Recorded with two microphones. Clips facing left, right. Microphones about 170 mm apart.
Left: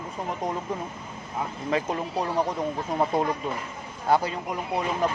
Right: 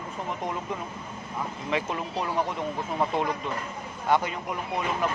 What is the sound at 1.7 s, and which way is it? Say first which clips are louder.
Speech: left 3 dB; 35° left (ahead or behind).